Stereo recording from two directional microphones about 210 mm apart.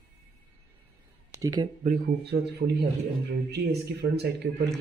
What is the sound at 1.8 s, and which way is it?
Speech, 45° right (ahead or behind).